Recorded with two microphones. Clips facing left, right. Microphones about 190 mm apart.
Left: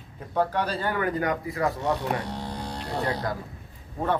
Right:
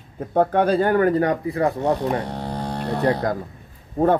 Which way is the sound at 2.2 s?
55° right (ahead or behind).